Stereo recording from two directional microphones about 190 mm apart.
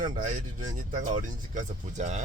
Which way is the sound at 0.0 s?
45° right (ahead or behind).